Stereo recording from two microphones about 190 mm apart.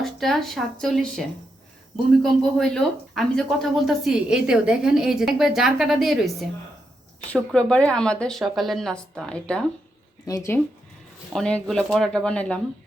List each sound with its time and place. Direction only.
0.0 s speech: centre (ahead or behind)
10.2 s speech: 15° left (ahead or behind)
11.3 s speech: 5° left (ahead or behind)